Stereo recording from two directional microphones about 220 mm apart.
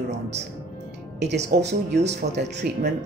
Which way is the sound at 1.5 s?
50° right (ahead or behind).